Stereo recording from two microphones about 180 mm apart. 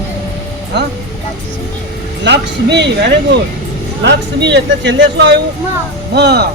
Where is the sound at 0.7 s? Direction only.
70° right (ahead or behind).